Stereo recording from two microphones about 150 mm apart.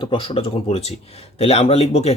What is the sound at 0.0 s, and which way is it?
Speech, 35° left (ahead or behind).